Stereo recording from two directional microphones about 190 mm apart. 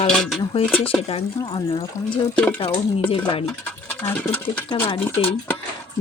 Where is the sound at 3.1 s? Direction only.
25° left (ahead or behind).